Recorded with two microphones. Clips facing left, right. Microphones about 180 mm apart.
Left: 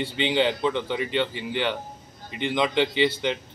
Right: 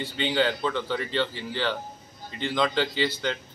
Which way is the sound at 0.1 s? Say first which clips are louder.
Left 1 dB; 20° left (ahead or behind).